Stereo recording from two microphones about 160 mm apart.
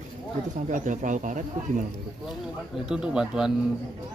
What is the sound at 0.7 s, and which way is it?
Speech, 55° right (ahead or behind).